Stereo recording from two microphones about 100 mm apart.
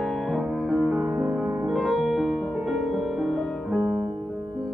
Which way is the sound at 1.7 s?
Centre (ahead or behind).